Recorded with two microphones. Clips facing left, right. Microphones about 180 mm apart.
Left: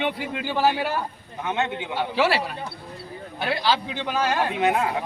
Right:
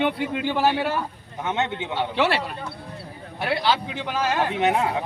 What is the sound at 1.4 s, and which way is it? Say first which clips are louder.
Speech: even; 25° right (ahead or behind).